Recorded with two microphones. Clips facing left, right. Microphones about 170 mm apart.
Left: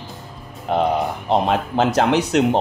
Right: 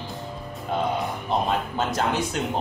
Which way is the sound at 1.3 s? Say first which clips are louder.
Left 6 dB; 80° left.